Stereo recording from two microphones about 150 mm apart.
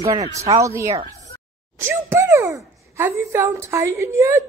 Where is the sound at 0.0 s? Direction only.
25° right (ahead or behind).